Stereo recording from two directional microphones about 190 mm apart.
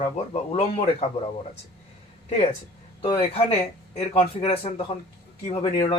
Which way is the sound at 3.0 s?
25° left (ahead or behind).